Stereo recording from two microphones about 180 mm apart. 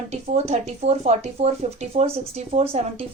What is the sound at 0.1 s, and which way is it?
A woman's voice, 40° right (ahead or behind).